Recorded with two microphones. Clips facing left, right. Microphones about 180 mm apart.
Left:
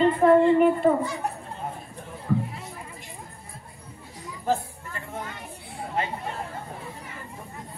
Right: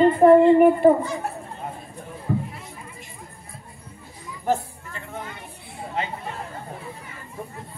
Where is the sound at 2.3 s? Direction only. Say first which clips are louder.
Even; 40° right (ahead or behind).